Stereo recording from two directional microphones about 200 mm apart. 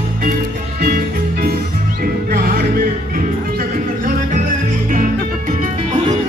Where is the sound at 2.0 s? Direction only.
50° right (ahead or behind).